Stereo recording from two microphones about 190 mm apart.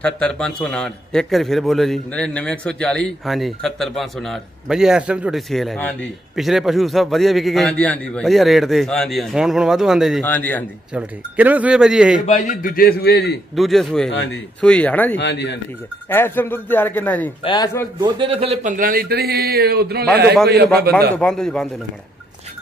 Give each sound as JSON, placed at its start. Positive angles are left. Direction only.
{"t": 0.0, "sound": "a man's voice", "side_deg": 5}
{"t": 10.2, "sound": "a man's voice", "side_deg": 10}
{"t": 10.9, "sound": "a man's voice", "side_deg": -5}
{"t": 12.3, "sound": "a man's voice", "side_deg": 40}
{"t": 13.6, "sound": "a man's voice", "side_deg": 0}
{"t": 15.1, "sound": "speech", "side_deg": 65}
{"t": 16.1, "sound": "a man's voice", "side_deg": 10}
{"t": 17.4, "sound": "speech", "side_deg": 25}
{"t": 17.9, "sound": "a man's voice", "side_deg": -25}
{"t": 21.2, "sound": "a man's voice", "side_deg": 5}